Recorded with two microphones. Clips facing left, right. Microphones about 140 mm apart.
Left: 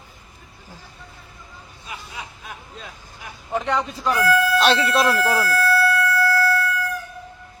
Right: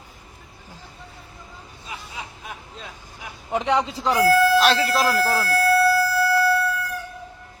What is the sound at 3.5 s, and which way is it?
Speech, 15° right (ahead or behind).